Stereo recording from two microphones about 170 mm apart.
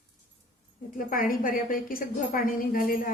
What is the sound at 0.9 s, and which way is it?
A woman's voice, 55° left (ahead or behind).